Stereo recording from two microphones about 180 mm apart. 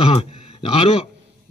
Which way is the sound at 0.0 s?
35° left (ahead or behind).